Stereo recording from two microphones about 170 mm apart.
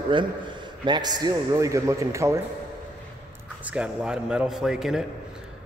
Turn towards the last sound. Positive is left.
turn(degrees=-5)  # may be behind; listen again after turning